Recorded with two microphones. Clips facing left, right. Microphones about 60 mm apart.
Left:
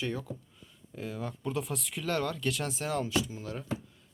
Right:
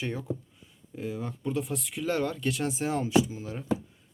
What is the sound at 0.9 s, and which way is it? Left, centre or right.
Speech, centre.